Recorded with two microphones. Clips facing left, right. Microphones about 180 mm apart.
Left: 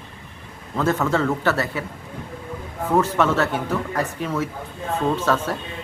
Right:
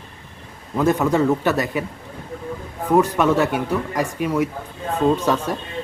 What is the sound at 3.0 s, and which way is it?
A man's voice, 15° right (ahead or behind).